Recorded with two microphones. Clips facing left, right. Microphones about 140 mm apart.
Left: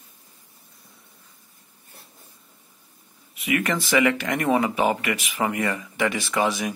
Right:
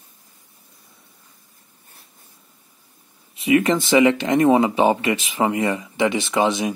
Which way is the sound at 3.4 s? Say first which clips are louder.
Right 7 dB; 25° right (ahead or behind).